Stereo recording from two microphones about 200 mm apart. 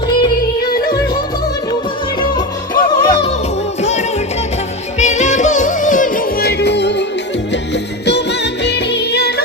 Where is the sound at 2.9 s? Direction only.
25° left (ahead or behind).